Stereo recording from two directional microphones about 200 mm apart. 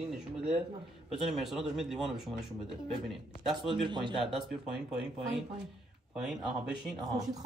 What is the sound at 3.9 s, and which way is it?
Speech, 25° right (ahead or behind).